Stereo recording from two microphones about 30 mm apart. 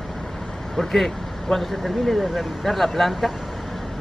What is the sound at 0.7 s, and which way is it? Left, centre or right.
Speech, centre.